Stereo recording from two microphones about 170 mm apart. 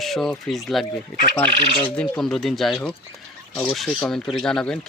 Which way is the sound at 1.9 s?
5° left (ahead or behind).